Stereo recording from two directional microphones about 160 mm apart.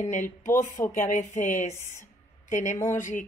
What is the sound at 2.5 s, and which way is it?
Speech, 50° left (ahead or behind).